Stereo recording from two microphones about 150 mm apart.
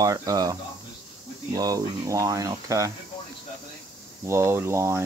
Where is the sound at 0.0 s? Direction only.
25° right (ahead or behind).